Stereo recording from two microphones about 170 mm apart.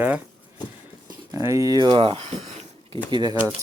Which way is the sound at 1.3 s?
20° right (ahead or behind).